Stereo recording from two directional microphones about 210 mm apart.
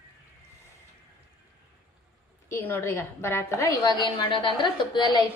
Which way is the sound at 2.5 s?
10° left (ahead or behind).